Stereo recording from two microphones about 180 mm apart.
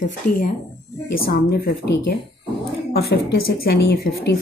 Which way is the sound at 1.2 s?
60° left (ahead or behind).